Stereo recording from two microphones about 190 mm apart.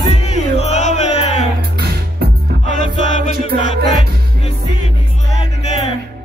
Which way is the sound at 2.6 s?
40° left (ahead or behind).